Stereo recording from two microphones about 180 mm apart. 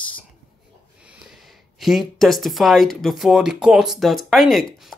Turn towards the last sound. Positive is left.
turn(degrees=0)  # may be behind; listen again after turning